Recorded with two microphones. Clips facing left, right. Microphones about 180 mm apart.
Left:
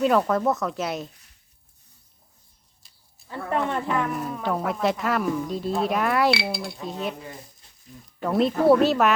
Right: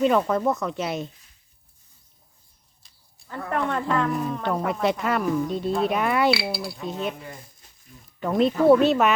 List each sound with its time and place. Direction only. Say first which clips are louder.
0.0 s speech: even; centre (ahead or behind)
3.2 s speech: even; 20° left (ahead or behind)
4.1 s speech: right 2 dB; 5° left (ahead or behind)
8.2 s speech: right 1 dB; centre (ahead or behind)